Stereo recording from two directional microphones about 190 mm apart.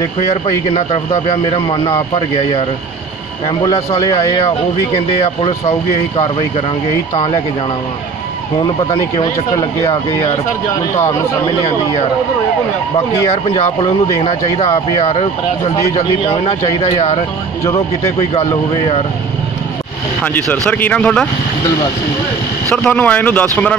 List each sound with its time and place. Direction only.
1.3 s speech: 30° left (ahead or behind)
3.6 s speech: 15° left (ahead or behind)
4.9 s speech: 30° left (ahead or behind)
8.9 s speech: 20° left (ahead or behind)
13.3 s speech: 30° left (ahead or behind)
16.3 s speech: 30° left (ahead or behind)
18.3 s speech: 30° left (ahead or behind)
20.3 s speech: 5° left (ahead or behind)
22.7 s speech: 5° left (ahead or behind)